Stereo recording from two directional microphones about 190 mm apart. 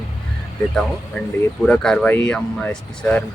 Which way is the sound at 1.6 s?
5° left (ahead or behind).